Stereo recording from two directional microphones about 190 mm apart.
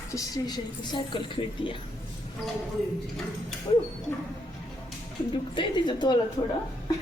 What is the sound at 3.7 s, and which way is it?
Speech, 25° left (ahead or behind).